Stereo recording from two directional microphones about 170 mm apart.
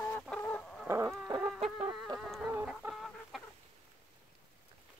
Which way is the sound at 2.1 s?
Centre (ahead or behind).